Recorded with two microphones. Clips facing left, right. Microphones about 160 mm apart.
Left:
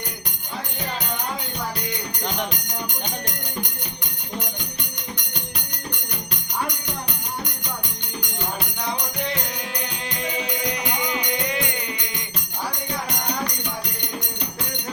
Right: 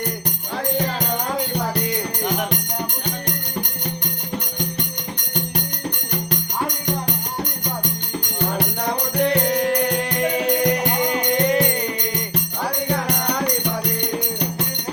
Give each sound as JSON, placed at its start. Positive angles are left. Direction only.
{"t": 8.5, "sound": "music", "side_deg": -60}
{"t": 12.9, "sound": "music", "side_deg": -60}